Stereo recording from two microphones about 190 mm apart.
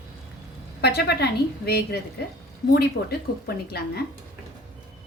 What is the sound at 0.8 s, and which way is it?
A woman's voice, 60° left (ahead or behind).